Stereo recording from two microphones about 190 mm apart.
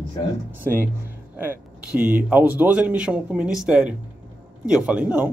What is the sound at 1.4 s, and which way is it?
Speech, 10° right (ahead or behind).